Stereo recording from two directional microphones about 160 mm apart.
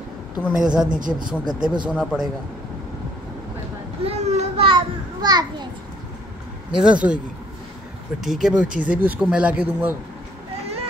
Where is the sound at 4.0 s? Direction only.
40° right (ahead or behind).